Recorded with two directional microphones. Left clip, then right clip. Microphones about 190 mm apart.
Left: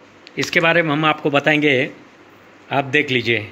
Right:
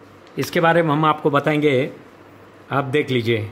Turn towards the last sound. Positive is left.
turn(degrees=-20)  # may be behind; listen again after turning